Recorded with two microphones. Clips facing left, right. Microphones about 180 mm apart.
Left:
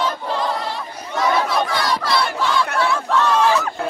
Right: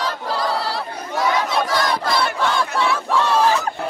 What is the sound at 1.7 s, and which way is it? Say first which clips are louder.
Battle cry: right 1 dB; 45° right (ahead or behind).